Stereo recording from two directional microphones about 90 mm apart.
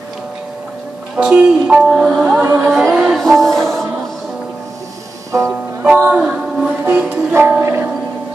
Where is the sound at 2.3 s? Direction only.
20° right (ahead or behind).